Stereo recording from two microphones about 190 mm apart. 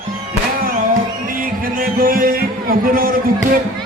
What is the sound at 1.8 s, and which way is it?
Music, 50° right (ahead or behind).